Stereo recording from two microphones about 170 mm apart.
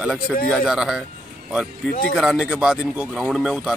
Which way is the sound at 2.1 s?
5° right (ahead or behind).